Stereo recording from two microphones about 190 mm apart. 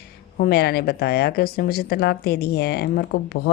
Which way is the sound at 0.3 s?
55° left (ahead or behind).